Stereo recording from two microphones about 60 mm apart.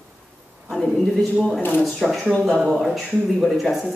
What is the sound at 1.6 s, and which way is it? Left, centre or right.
Speech, left.